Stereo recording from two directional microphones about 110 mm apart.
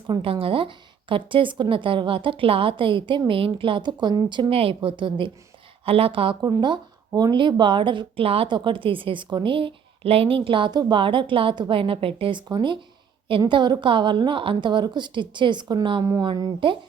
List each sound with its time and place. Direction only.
0.1 s a woman's voice: 55° right (ahead or behind)
6.4 s a woman's voice: 40° right (ahead or behind)
8.2 s a woman's voice: 60° right (ahead or behind)
12.5 s a woman's voice: 45° right (ahead or behind)